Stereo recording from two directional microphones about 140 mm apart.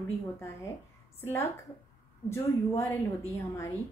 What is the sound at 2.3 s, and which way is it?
Speech, 15° left (ahead or behind).